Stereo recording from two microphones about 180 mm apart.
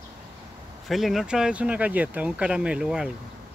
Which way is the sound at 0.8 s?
Centre (ahead or behind).